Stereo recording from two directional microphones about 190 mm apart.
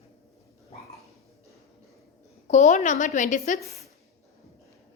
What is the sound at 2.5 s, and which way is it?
A woman's voice, 40° left (ahead or behind).